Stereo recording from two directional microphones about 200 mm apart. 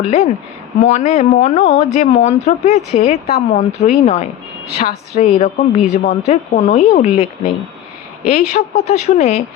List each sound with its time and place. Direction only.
0.0 s speech: 35° left (ahead or behind)